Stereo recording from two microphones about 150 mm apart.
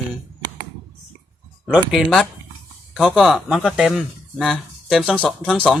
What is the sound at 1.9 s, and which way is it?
Speech, centre (ahead or behind).